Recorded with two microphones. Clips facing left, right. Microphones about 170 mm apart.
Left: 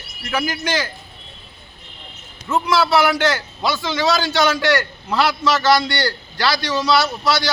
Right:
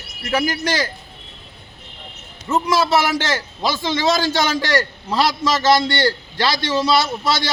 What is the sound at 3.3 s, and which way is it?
Speech, 25° right (ahead or behind).